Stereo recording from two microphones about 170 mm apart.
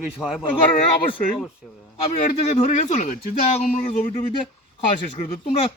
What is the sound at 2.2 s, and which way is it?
Speech, 40° left (ahead or behind).